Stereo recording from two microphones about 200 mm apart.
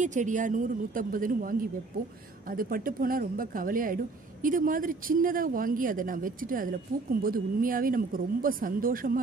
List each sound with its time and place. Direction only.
0.0 s a woman's voice: 40° right (ahead or behind)